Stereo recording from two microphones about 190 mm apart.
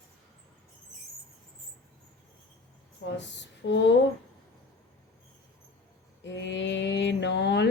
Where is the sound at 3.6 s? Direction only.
70° left (ahead or behind).